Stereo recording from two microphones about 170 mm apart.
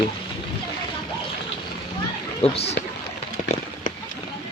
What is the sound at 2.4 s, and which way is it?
Speech, 35° left (ahead or behind).